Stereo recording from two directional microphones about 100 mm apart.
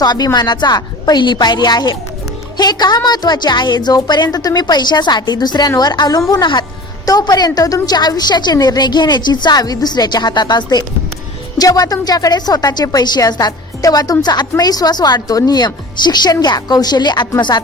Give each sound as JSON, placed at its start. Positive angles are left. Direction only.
{"t": 0.0, "sound": "a woman's voice", "side_deg": 45}